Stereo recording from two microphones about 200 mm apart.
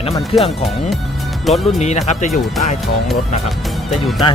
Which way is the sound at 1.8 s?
35° left (ahead or behind).